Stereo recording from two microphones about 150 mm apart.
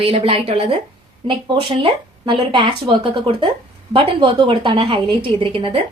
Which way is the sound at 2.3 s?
35° right (ahead or behind).